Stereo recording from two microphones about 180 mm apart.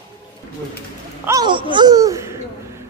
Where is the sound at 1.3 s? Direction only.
25° right (ahead or behind).